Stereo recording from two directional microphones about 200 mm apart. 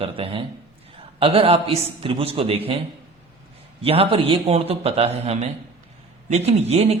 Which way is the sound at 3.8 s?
30° right (ahead or behind).